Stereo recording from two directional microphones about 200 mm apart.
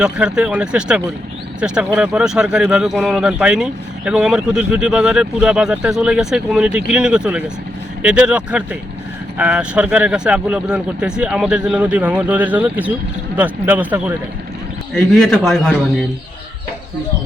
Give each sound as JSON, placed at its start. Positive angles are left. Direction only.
{"t": 0.0, "sound": "a man's voice", "side_deg": -5}
{"t": 14.9, "sound": "a man's voice", "side_deg": 5}